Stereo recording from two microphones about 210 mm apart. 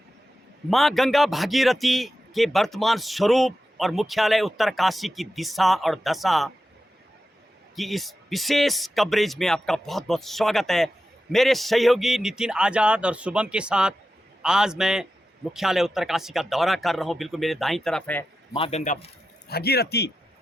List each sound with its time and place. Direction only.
0.7 s speech: centre (ahead or behind)
7.8 s speech: centre (ahead or behind)
18.5 s a man's voice: 30° left (ahead or behind)
19.5 s a man's voice: 50° left (ahead or behind)